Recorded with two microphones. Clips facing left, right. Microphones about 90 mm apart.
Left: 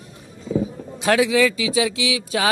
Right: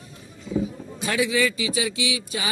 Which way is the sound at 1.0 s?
90° left.